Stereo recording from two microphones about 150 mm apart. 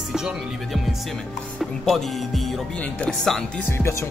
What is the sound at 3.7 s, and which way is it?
Speech, 20° left (ahead or behind).